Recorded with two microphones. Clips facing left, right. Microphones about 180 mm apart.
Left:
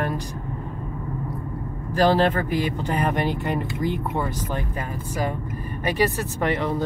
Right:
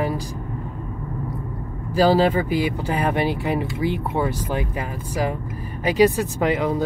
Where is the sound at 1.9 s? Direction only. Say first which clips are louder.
Right 2 dB; 10° right (ahead or behind).